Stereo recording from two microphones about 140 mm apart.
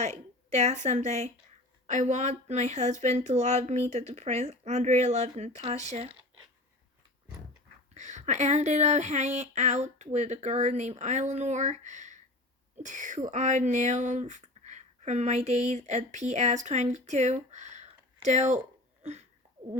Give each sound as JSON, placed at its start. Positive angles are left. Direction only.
{"t": 0.0, "sound": "speech", "side_deg": -50}
{"t": 7.9, "sound": "speech", "side_deg": -55}